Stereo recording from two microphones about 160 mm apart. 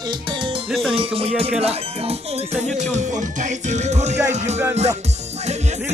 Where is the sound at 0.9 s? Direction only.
40° right (ahead or behind).